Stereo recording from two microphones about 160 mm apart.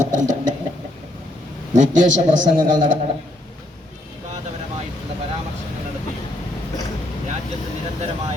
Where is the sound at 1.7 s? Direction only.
50° right (ahead or behind).